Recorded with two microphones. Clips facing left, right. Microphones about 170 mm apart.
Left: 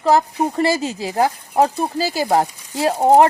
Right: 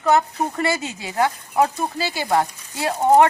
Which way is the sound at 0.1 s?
30° left (ahead or behind).